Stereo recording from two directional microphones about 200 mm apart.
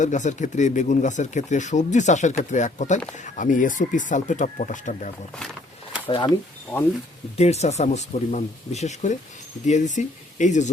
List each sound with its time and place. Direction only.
0.0 s speech: 35° left (ahead or behind)
6.1 s speech: 25° left (ahead or behind)
7.3 s speech: 35° left (ahead or behind)